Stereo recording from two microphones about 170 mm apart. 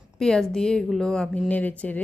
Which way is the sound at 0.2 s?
5° left (ahead or behind).